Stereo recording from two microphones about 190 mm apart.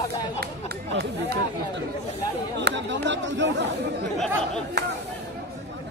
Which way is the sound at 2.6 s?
70° right (ahead or behind).